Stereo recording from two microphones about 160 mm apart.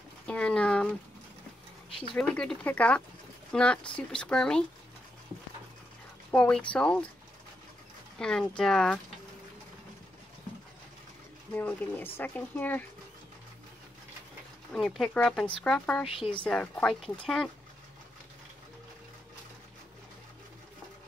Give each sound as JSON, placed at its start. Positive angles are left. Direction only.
{"t": 0.3, "sound": "a sound", "side_deg": 5}
{"t": 1.9, "sound": "a sound", "side_deg": 35}
{"t": 2.1, "sound": "speech", "side_deg": 5}
{"t": 6.3, "sound": "speech", "side_deg": 5}
{"t": 8.2, "sound": "speech", "side_deg": 5}
{"t": 11.5, "sound": "speech", "side_deg": 10}
{"t": 14.7, "sound": "speech", "side_deg": 5}